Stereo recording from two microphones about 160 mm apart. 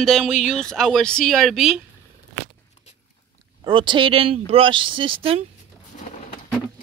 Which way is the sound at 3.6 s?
30° right (ahead or behind).